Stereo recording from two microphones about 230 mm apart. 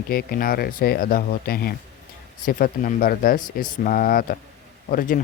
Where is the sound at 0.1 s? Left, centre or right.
Left.